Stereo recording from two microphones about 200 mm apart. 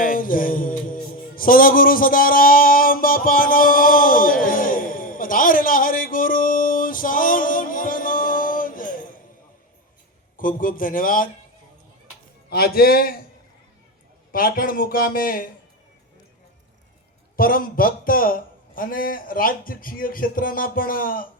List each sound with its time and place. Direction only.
0.0 s music: 45° left (ahead or behind)
4.4 s a sound: 45° left (ahead or behind)
10.3 s a man's voice: 45° left (ahead or behind)
12.5 s a man's voice: 50° left (ahead or behind)
14.3 s a man's voice: 45° left (ahead or behind)
17.3 s a man's voice: 45° left (ahead or behind)